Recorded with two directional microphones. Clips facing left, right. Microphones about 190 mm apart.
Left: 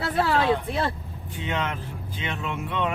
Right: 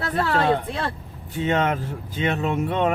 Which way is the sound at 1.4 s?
40° right (ahead or behind).